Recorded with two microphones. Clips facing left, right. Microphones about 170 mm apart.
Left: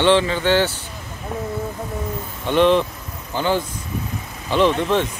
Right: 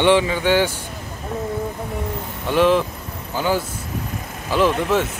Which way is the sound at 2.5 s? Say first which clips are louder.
Left 1 dB; 5° right (ahead or behind).